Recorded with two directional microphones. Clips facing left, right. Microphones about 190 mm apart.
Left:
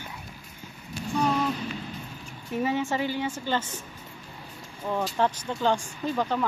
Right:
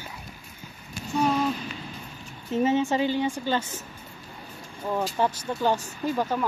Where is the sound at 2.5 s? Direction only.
20° right (ahead or behind).